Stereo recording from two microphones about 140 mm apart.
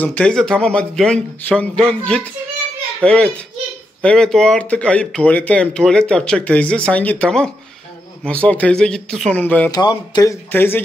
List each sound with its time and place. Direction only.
0.0 s speech: 10° left (ahead or behind)
9.7 s speech: 30° left (ahead or behind)
10.5 s speech: 15° left (ahead or behind)